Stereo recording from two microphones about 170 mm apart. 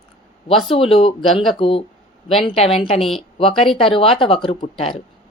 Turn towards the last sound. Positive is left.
turn(degrees=35)  # may be behind; listen again after turning